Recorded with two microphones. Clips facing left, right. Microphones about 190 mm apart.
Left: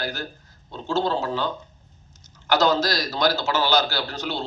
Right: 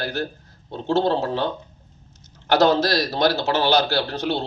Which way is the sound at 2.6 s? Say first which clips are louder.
Right 5 dB; 30° right (ahead or behind).